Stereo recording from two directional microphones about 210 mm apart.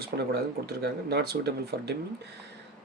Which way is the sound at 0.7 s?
50° right (ahead or behind).